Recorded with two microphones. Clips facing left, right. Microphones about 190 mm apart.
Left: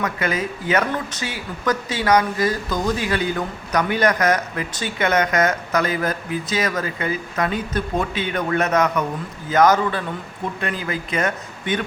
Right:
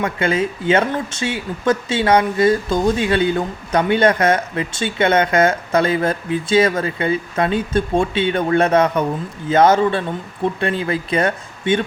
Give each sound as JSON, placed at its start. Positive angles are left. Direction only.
{"t": 0.0, "sound": "speech", "side_deg": -30}